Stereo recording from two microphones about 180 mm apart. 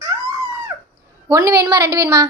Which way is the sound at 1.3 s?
15° right (ahead or behind).